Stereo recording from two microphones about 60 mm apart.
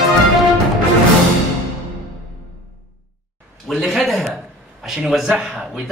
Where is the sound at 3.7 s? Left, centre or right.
Centre.